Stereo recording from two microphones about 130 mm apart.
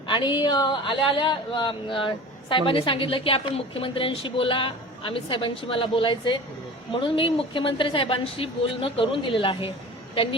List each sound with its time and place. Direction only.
0.1 s speech: 40° left (ahead or behind)